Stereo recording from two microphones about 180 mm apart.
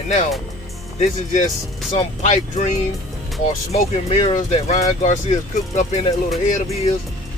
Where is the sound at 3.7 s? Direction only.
35° left (ahead or behind).